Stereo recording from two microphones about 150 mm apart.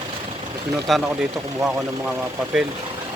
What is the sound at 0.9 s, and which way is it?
Speech, centre (ahead or behind).